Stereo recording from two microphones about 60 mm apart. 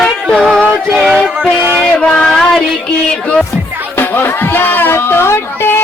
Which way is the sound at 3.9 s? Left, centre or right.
Left.